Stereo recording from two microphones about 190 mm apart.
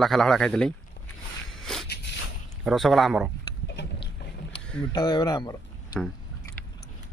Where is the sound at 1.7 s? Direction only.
5° left (ahead or behind).